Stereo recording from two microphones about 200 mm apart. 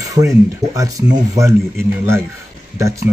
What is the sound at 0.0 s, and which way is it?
Speech, 15° right (ahead or behind).